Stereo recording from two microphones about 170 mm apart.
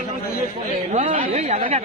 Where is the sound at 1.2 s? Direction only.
40° right (ahead or behind).